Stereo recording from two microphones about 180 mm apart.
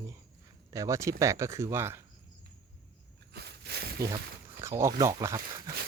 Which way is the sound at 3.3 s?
65° right (ahead or behind).